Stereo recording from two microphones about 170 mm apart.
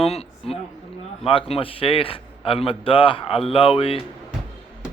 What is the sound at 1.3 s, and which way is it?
A man's voice, 35° left (ahead or behind).